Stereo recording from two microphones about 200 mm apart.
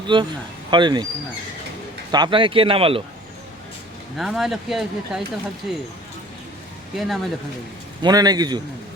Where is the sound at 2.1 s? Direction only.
25° right (ahead or behind).